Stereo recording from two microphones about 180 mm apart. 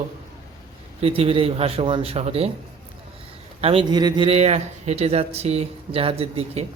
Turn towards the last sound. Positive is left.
turn(degrees=-35)  # may be behind; listen again after turning